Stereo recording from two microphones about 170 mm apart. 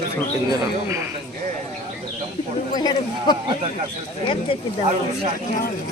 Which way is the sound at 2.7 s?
25° left (ahead or behind).